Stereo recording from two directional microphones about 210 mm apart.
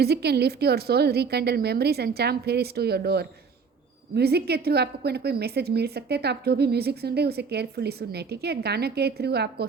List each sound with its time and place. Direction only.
0.0 s a woman's voice: 50° right (ahead or behind)